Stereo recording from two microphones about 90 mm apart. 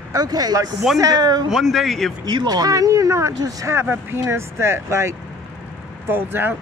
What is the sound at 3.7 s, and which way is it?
Speech, 25° right (ahead or behind).